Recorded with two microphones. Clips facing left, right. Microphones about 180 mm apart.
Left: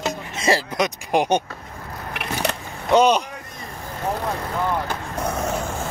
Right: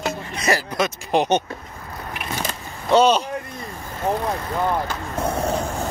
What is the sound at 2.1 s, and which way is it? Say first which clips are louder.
Vehicle: left 3 dB; 70° left (ahead or behind).